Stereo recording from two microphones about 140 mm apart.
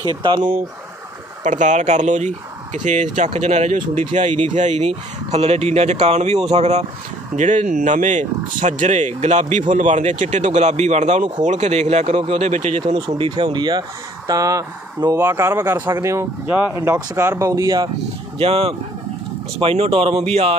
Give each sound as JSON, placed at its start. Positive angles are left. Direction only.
{"t": 0.0, "sound": "speech", "side_deg": -35}
{"t": 1.4, "sound": "speech", "side_deg": -60}
{"t": 7.3, "sound": "speech", "side_deg": -60}
{"t": 12.8, "sound": "speech", "side_deg": -35}
{"t": 18.4, "sound": "speech", "side_deg": -45}